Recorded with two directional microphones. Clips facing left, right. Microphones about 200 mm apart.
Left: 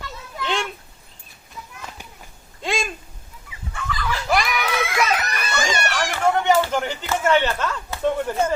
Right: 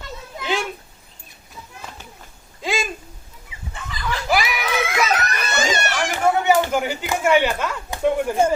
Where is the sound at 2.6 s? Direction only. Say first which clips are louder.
Right 1 dB; centre (ahead or behind).